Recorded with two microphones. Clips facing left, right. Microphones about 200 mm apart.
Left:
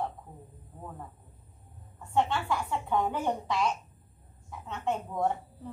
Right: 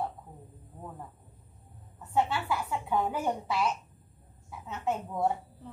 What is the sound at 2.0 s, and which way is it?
A woman's voice, 5° right (ahead or behind).